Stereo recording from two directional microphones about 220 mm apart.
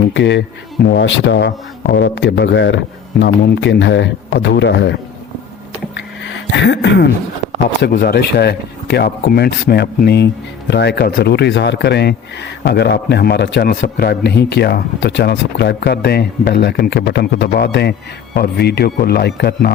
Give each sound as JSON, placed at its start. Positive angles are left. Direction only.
{"t": 0.1, "sound": "speech", "side_deg": 55}
{"t": 5.9, "sound": "a sound", "side_deg": 55}
{"t": 7.8, "sound": "speech", "side_deg": 45}